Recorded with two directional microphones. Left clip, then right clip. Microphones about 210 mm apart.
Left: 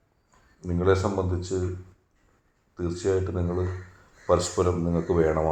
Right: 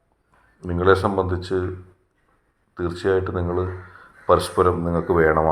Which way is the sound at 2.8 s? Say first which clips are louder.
Right 5 dB; 15° right (ahead or behind).